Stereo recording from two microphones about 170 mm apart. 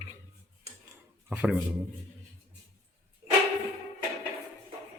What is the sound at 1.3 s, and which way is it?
Speech, 10° right (ahead or behind).